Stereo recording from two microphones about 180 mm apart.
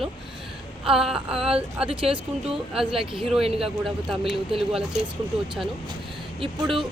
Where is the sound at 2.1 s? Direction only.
30° right (ahead or behind).